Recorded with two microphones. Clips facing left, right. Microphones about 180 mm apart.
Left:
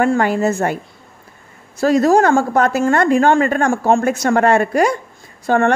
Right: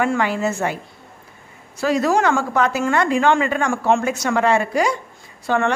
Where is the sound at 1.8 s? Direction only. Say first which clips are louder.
Left 5 dB; 45° left (ahead or behind).